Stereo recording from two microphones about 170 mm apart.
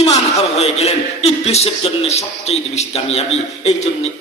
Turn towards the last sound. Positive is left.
turn(degrees=40)  # may be behind; listen again after turning